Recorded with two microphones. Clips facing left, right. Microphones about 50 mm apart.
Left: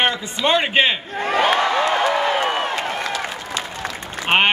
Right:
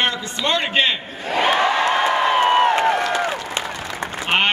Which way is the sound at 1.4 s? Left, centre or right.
Right.